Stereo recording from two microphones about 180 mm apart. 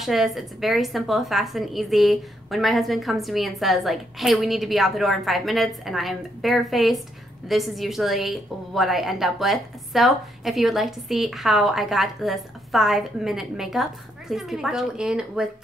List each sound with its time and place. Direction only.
0.0 s a woman's voice: centre (ahead or behind)